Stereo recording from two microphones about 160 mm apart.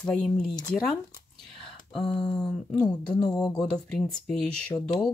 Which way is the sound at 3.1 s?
25° left (ahead or behind).